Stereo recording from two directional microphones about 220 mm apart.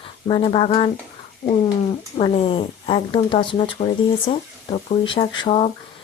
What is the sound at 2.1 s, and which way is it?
Speech, 25° left (ahead or behind).